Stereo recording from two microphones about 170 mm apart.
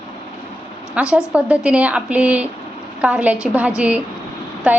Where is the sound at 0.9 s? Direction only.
5° right (ahead or behind).